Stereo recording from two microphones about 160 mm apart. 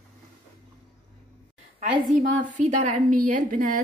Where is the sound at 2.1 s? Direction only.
55° right (ahead or behind).